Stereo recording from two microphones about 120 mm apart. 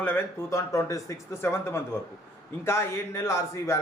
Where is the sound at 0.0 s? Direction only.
15° left (ahead or behind).